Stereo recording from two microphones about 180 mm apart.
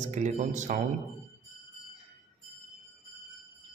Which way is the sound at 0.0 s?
40° right (ahead or behind).